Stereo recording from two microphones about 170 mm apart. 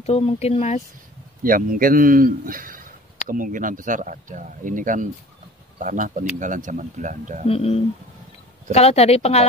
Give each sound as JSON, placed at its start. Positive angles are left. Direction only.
{"t": 0.0, "sound": "speech", "side_deg": 35}
{"t": 1.4, "sound": "a man's voice", "side_deg": -55}
{"t": 7.4, "sound": "speech", "side_deg": 35}